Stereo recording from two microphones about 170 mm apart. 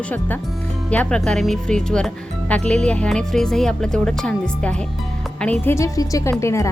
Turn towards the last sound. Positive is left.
turn(degrees=15)  # may be behind; listen again after turning